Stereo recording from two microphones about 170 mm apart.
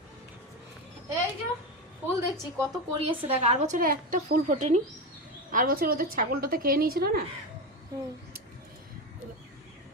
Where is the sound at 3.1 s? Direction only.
35° right (ahead or behind).